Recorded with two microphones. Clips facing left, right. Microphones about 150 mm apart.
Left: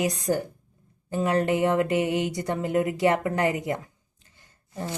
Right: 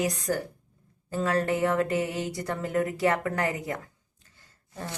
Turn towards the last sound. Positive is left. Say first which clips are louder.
# left 5 dB
turn(degrees=20)  # may be behind; listen again after turning